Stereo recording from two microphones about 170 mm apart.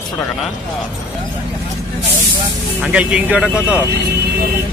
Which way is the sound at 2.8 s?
5° right (ahead or behind).